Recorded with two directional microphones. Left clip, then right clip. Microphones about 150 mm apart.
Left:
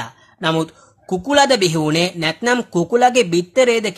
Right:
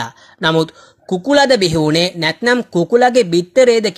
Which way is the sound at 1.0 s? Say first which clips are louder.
Right 2 dB; 15° right (ahead or behind).